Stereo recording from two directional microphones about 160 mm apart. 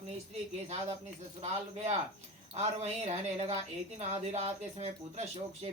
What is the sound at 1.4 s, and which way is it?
Speech, 40° right (ahead or behind).